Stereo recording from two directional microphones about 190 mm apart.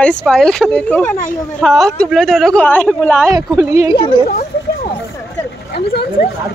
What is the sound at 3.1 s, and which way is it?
Speech, 15° right (ahead or behind).